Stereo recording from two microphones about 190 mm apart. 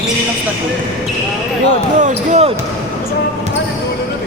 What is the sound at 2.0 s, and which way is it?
Speech, 40° right (ahead or behind).